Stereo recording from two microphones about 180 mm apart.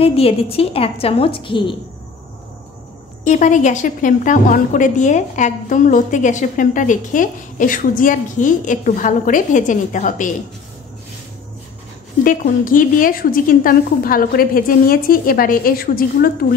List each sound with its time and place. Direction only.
0.0 s a woman's voice: 30° left (ahead or behind)
3.3 s a woman's voice: 45° left (ahead or behind)
12.2 s a woman's voice: 50° left (ahead or behind)